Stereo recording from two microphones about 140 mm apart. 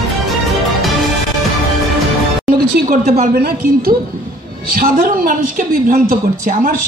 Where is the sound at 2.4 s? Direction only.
85° right.